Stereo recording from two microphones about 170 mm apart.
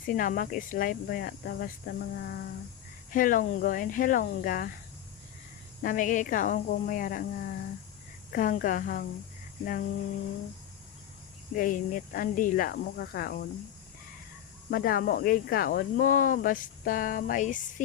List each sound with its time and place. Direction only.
0.0 s speech: 55° left (ahead or behind)
3.1 s a woman's voice: 55° left (ahead or behind)
5.8 s a woman's voice: 50° left (ahead or behind)
11.5 s speech: 50° left (ahead or behind)
14.7 s speech: 60° left (ahead or behind)